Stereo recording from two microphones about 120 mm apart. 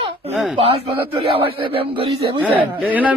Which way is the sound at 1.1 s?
50° right (ahead or behind).